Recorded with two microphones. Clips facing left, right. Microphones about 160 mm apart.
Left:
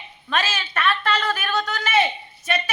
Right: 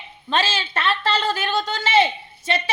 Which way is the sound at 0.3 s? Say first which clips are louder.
Right 2 dB; 30° right (ahead or behind).